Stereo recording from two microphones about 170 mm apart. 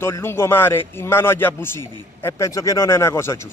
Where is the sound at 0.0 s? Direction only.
15° left (ahead or behind).